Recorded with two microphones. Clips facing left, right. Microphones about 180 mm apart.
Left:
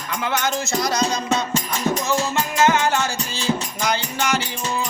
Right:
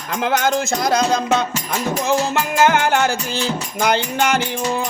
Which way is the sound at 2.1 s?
55° right (ahead or behind).